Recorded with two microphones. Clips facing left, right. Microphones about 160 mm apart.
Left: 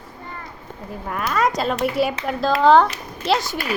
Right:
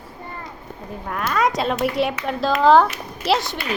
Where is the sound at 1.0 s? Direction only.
Centre (ahead or behind).